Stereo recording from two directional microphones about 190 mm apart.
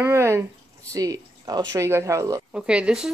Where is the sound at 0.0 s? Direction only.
15° right (ahead or behind).